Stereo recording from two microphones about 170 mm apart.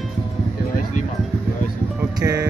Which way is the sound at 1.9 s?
20° right (ahead or behind).